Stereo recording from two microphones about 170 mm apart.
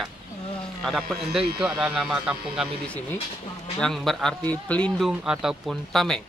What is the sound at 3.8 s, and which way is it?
Speech, centre (ahead or behind).